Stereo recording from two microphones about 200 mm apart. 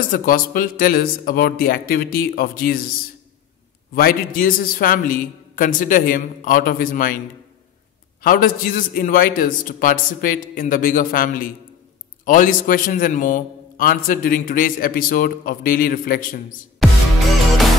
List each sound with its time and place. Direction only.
0.1 s a man's voice: 45° left (ahead or behind)
8.2 s a man's voice: 45° left (ahead or behind)
16.8 s music: centre (ahead or behind)